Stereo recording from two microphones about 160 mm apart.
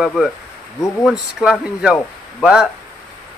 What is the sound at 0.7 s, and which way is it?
Speech, 20° left (ahead or behind).